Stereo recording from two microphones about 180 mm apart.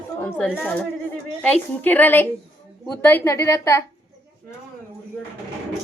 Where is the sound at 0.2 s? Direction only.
10° left (ahead or behind).